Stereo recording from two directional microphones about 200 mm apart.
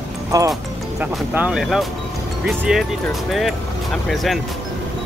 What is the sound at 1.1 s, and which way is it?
Speech, 5° right (ahead or behind).